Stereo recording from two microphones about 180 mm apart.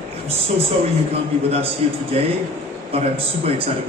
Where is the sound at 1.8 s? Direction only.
35° right (ahead or behind).